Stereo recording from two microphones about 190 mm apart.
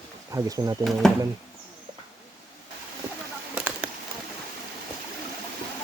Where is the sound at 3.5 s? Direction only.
5° right (ahead or behind).